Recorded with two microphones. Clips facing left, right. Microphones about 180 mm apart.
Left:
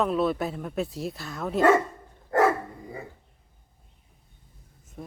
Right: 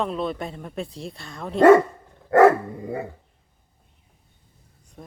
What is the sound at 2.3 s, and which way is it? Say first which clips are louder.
Dog: right 8 dB; 75° right (ahead or behind).